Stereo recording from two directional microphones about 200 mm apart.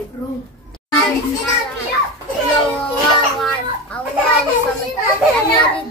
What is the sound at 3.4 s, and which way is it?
Speech, 5° left (ahead or behind).